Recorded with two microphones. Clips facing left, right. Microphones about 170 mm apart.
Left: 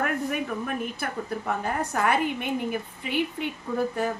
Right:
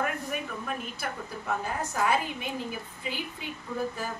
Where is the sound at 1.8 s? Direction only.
60° left (ahead or behind).